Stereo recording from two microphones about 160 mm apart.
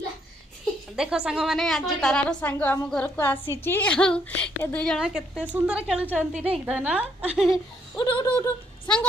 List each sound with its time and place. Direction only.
0.9 s a woman's voice: 5° right (ahead or behind)
4.9 s a woman's voice: 5° right (ahead or behind)
6.3 s a woman's voice: 40° right (ahead or behind)
6.7 s a woman's voice: 10° right (ahead or behind)
7.9 s speech: 25° left (ahead or behind)